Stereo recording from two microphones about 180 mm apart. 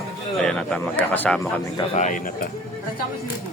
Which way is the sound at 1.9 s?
45° left (ahead or behind).